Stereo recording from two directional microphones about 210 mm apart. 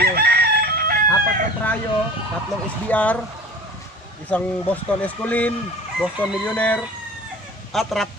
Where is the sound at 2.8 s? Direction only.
5° left (ahead or behind).